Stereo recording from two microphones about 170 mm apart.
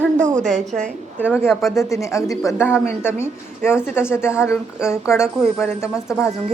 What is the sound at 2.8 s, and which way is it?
Speech, 15° left (ahead or behind).